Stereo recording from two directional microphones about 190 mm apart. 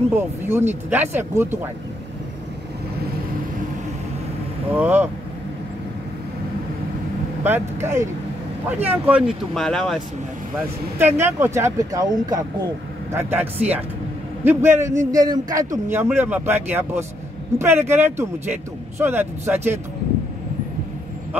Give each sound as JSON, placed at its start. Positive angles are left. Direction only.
{"t": 0.1, "sound": "speech", "side_deg": -10}
{"t": 4.7, "sound": "speech", "side_deg": -10}
{"t": 7.4, "sound": "speech", "side_deg": -10}
{"t": 9.5, "sound": "speech", "side_deg": 0}
{"t": 11.0, "sound": "speech", "side_deg": -10}